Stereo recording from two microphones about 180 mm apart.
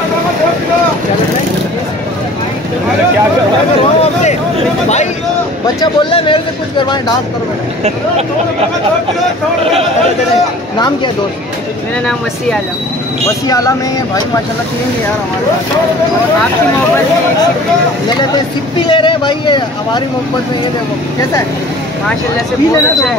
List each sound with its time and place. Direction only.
5.8 s speech: 25° left (ahead or behind)
13.5 s speech: 20° left (ahead or behind)
18.8 s speech: 25° left (ahead or behind)